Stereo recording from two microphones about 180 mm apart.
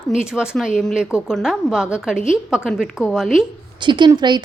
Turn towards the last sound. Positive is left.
turn(degrees=-25)  # may be behind; listen again after turning